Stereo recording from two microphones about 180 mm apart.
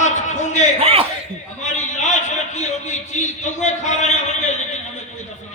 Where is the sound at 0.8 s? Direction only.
35° right (ahead or behind).